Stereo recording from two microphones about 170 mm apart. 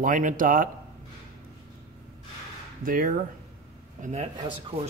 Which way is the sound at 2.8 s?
55° right (ahead or behind).